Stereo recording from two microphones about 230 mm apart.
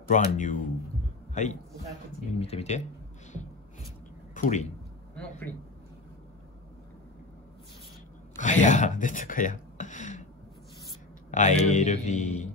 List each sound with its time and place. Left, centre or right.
0.1 s a man's voice: left
4.3 s speech: left
5.1 s speech: centre
8.4 s speech: left
11.2 s speech: left